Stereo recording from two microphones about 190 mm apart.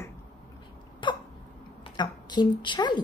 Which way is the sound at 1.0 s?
25° left (ahead or behind).